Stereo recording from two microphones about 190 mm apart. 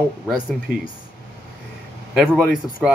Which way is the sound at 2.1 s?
Centre (ahead or behind).